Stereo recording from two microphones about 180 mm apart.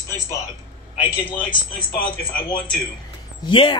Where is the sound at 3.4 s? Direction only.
30° left (ahead or behind).